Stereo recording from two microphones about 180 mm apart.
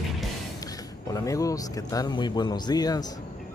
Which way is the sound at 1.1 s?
20° left (ahead or behind).